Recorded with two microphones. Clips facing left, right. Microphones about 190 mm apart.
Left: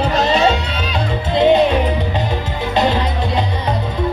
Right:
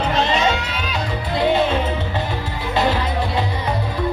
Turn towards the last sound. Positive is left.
turn(degrees=20)  # may be behind; listen again after turning